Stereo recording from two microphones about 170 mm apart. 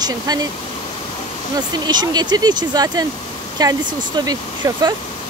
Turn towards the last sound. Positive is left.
turn(degrees=-20)  # may be behind; listen again after turning